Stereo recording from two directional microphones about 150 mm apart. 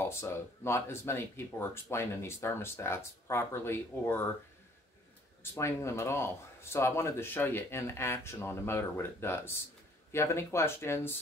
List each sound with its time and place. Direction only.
0.0 s speech: 15° left (ahead or behind)
5.4 s speech: 15° left (ahead or behind)